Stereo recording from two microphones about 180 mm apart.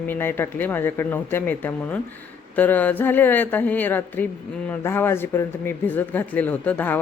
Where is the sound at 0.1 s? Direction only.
10° left (ahead or behind).